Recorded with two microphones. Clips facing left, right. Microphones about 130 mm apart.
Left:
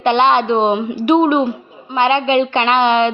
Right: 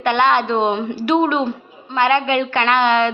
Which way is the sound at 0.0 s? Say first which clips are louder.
Left 3 dB; 20° left (ahead or behind).